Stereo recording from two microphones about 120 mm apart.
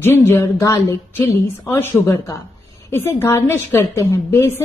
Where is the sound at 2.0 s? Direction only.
30° left (ahead or behind).